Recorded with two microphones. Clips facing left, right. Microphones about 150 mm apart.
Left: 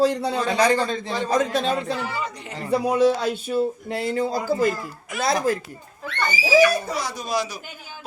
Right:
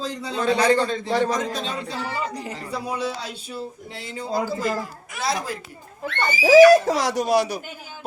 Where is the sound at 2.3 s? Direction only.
35° right (ahead or behind).